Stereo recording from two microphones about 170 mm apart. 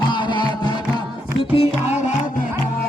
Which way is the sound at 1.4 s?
35° left (ahead or behind).